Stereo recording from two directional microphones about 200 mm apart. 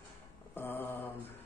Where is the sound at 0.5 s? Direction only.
10° left (ahead or behind).